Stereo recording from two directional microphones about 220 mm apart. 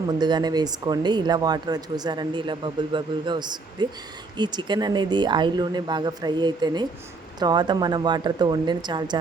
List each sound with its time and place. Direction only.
0.1 s speech: 20° right (ahead or behind)